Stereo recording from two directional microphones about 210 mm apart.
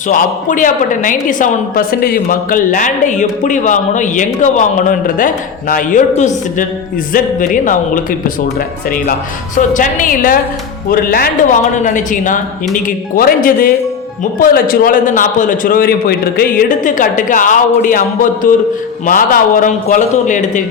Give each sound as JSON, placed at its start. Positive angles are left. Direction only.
{"t": 0.1, "sound": "a woman's voice", "side_deg": 40}
{"t": 9.6, "sound": "a woman's voice", "side_deg": 40}